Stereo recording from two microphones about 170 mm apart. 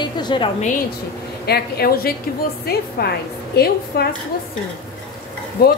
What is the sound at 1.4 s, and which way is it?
A woman's voice, 70° left (ahead or behind).